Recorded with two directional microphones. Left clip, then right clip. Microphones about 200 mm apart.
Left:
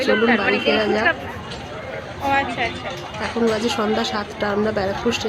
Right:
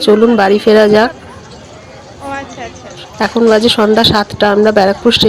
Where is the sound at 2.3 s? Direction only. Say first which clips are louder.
Left 3 dB; 30° right (ahead or behind).